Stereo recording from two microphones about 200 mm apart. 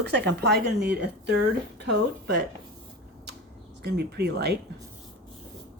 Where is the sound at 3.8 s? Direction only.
55° right (ahead or behind).